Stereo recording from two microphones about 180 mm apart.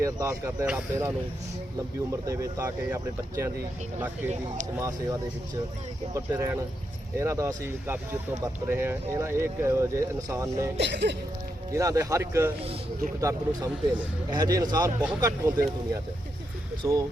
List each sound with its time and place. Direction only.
0.0 s speech: 15° right (ahead or behind)
4.8 s speech: 15° right (ahead or behind)
6.1 s speech: 15° right (ahead or behind)
10.8 s speech: 70° right (ahead or behind)
11.7 s speech: 20° right (ahead or behind)
16.8 s speech: 15° right (ahead or behind)